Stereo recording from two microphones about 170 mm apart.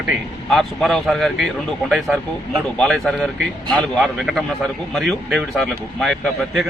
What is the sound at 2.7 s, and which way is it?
Speech, 5° left (ahead or behind).